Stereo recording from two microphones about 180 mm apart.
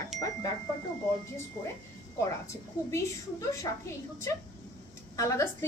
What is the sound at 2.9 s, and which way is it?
Speech, 20° left (ahead or behind).